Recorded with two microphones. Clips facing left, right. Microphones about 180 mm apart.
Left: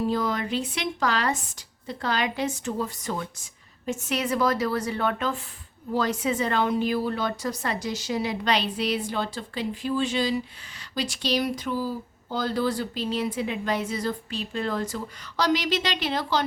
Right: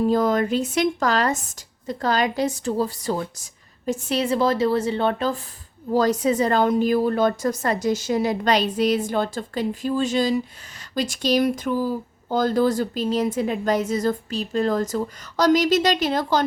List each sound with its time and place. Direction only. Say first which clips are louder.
0.1 s a woman's voice: right 7 dB; 45° right (ahead or behind)